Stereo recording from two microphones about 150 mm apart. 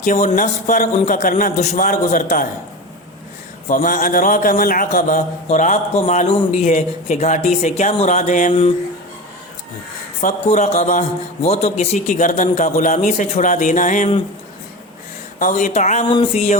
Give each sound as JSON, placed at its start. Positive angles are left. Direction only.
{"t": 0.0, "sound": "a man's voice", "side_deg": 55}
{"t": 3.7, "sound": "a man's voice", "side_deg": 65}
{"t": 4.9, "sound": "a man's voice", "side_deg": 55}
{"t": 10.2, "sound": "a man's voice", "side_deg": 55}
{"t": 15.4, "sound": "a man's voice", "side_deg": 60}